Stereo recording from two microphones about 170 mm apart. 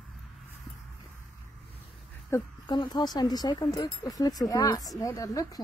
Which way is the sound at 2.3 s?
25° left (ahead or behind).